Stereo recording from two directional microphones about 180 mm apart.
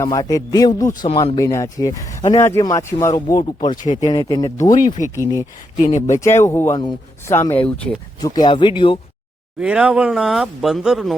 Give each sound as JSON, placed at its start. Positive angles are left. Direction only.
{"t": 0.0, "sound": "speech", "side_deg": 20}
{"t": 3.8, "sound": "speech", "side_deg": 35}
{"t": 4.1, "sound": "speech", "side_deg": 20}
{"t": 4.7, "sound": "speech", "side_deg": 45}
{"t": 5.2, "sound": "speech", "side_deg": 15}
{"t": 5.7, "sound": "speech", "side_deg": 40}
{"t": 6.1, "sound": "speech", "side_deg": 15}
{"t": 6.7, "sound": "speech", "side_deg": 25}
{"t": 7.3, "sound": "speech", "side_deg": 10}
{"t": 8.2, "sound": "speech", "side_deg": 20}
{"t": 9.6, "sound": "speech", "side_deg": -5}